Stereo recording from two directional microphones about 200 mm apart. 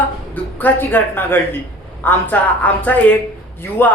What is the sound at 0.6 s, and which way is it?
A woman's voice, 10° left (ahead or behind).